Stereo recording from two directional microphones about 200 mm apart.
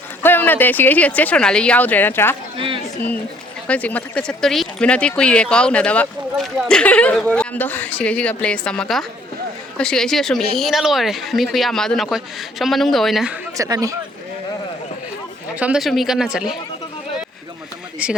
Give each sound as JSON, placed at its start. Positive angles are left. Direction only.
{"t": 0.2, "sound": "speech", "side_deg": 10}
{"t": 2.6, "sound": "speech", "side_deg": -25}
{"t": 3.7, "sound": "a woman's voice", "side_deg": 5}
{"t": 13.6, "sound": "speech", "side_deg": -15}
{"t": 15.5, "sound": "a woman's voice", "side_deg": -5}
{"t": 18.0, "sound": "speech", "side_deg": -5}